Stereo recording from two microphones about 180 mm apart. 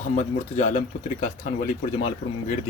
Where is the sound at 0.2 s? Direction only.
35° left (ahead or behind).